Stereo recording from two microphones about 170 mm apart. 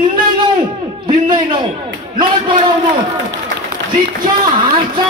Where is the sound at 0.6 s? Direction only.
30° right (ahead or behind).